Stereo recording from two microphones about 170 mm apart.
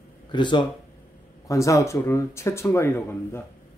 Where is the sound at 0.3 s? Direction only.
25° left (ahead or behind).